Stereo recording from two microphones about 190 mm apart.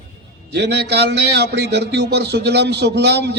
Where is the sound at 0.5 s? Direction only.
60° right (ahead or behind).